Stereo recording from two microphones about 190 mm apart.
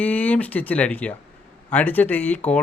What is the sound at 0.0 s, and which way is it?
Speech, 10° left (ahead or behind).